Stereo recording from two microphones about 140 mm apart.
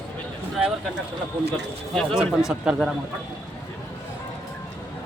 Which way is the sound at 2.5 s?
5° right (ahead or behind).